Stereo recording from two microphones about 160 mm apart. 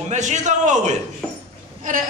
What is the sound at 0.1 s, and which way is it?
Speech, 50° right (ahead or behind).